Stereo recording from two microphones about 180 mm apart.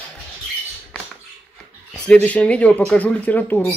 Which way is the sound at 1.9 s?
5° left (ahead or behind).